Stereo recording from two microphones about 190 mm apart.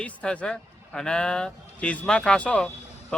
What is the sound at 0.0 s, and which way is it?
A man's voice, 5° left (ahead or behind).